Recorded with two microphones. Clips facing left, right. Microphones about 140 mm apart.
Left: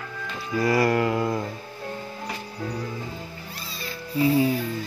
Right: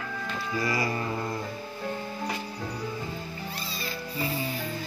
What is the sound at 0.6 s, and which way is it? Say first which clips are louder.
Music: left 9 dB; 65° left (ahead or behind).